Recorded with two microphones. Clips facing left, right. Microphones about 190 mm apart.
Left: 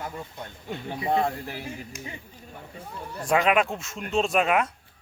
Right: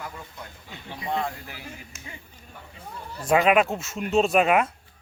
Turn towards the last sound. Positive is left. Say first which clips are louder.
# right 3 dB
turn(degrees=-5)  # may be behind; listen again after turning